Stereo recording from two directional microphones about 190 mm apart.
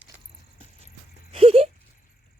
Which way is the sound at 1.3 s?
30° right (ahead or behind).